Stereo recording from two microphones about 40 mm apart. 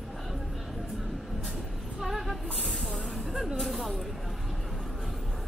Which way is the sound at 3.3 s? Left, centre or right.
Centre.